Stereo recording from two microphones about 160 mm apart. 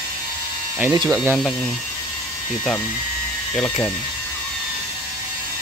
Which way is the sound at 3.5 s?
15° left (ahead or behind).